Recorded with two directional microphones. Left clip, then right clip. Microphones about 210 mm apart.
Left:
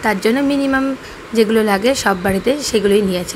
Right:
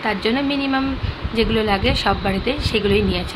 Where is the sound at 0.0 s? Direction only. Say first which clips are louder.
Left 5 dB; 25° left (ahead or behind).